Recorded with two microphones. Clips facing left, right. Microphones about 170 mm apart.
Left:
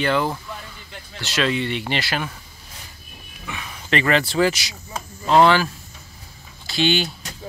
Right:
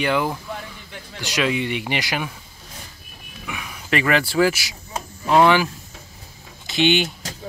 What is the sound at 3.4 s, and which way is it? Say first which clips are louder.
Speech: even; 10° right (ahead or behind).